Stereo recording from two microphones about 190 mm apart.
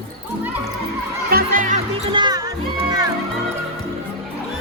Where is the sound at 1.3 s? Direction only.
50° right (ahead or behind).